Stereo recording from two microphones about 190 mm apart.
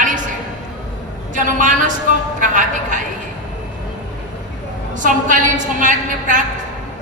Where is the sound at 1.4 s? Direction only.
45° right (ahead or behind).